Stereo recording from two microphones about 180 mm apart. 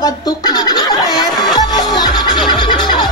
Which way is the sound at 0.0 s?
20° left (ahead or behind).